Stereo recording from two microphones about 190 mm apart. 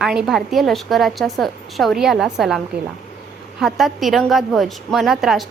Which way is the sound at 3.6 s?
Centre (ahead or behind).